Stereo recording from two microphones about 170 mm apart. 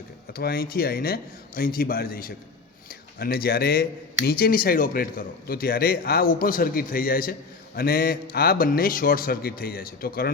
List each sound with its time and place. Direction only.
0.3 s a man's voice: 65° left (ahead or behind)